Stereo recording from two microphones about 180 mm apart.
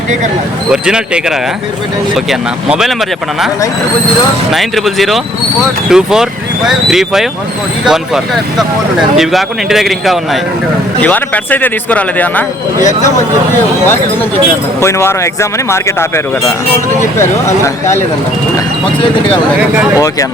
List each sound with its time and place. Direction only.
0.7 s a man's voice: 5° right (ahead or behind)
4.5 s a man's voice: centre (ahead or behind)
11.0 s speech: 10° left (ahead or behind)
12.8 s speech: 45° left (ahead or behind)
13.8 s speech: 10° left (ahead or behind)